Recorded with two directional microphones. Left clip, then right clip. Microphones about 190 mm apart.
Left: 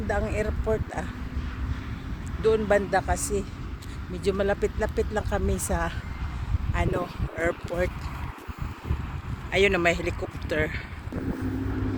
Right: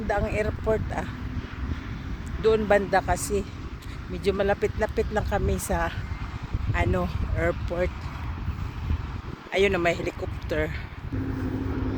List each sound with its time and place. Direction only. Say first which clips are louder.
0.1 s speech: right 2 dB; 20° right (ahead or behind)
2.4 s speech: right 1 dB; 20° right (ahead or behind); by 7.9 s 5° right (ahead or behind)
9.5 s speech: left 1 dB; 5° right (ahead or behind)